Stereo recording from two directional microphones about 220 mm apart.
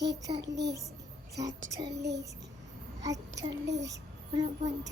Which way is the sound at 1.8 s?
50° right (ahead or behind).